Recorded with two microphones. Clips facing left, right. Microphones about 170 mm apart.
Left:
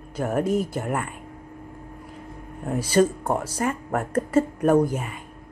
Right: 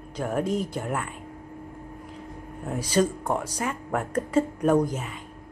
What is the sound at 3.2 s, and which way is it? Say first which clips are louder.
Speech: left 3 dB; 5° left (ahead or behind).